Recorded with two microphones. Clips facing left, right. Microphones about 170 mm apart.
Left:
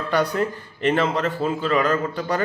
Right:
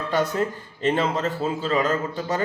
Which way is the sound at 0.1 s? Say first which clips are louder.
Left 2 dB; 25° right (ahead or behind).